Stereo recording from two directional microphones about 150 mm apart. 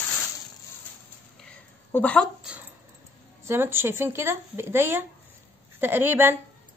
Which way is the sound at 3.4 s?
15° right (ahead or behind).